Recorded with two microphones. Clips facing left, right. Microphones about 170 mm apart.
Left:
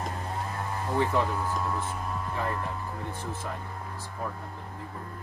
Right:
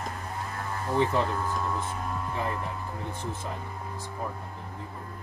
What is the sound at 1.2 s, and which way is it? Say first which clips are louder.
Speech: even; 5° left (ahead or behind).